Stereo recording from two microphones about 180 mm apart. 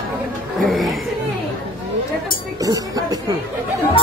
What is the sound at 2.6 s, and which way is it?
Music, 20° right (ahead or behind).